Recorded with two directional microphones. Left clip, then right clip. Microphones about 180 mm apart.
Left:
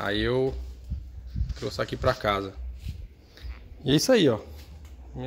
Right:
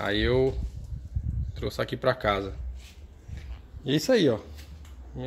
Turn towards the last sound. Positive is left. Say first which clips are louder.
# even
turn(degrees=10)  # may be behind; listen again after turning